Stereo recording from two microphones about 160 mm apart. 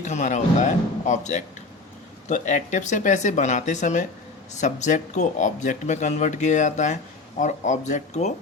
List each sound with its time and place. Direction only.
0.0 s speech: 50° left (ahead or behind)